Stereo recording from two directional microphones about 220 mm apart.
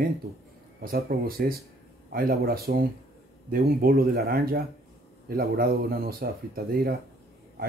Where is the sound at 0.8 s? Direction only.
40° right (ahead or behind).